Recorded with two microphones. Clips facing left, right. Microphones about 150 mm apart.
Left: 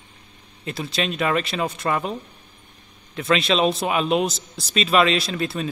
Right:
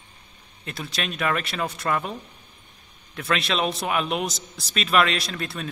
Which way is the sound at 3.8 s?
30° left (ahead or behind).